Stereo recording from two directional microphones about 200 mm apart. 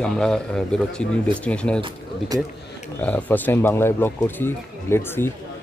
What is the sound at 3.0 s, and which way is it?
Speech, 10° left (ahead or behind).